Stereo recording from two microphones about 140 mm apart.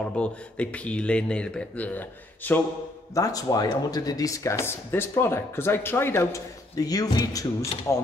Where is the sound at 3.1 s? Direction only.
25° left (ahead or behind).